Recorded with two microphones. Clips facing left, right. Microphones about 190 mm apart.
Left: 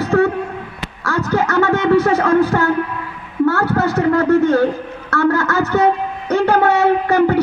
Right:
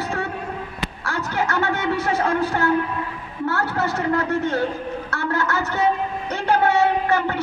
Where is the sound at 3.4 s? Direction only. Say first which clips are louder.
Left 7 dB; 40° left (ahead or behind).